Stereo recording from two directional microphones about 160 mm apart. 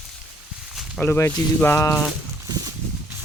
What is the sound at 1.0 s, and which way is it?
Speech, 15° left (ahead or behind).